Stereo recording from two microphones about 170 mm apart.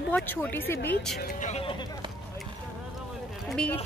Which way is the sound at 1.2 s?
45° left (ahead or behind).